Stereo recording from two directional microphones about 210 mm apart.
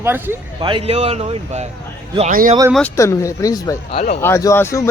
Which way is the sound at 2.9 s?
15° left (ahead or behind).